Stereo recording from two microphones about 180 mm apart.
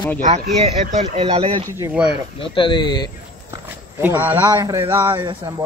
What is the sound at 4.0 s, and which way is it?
Speech, 10° right (ahead or behind).